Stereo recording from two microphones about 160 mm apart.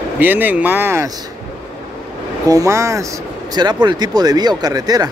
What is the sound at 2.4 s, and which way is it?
Speech, 20° right (ahead or behind).